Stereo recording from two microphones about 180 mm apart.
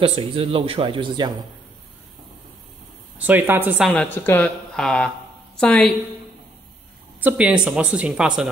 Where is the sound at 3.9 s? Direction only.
10° left (ahead or behind).